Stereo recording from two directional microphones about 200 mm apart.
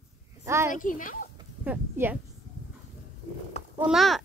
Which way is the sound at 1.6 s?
10° right (ahead or behind).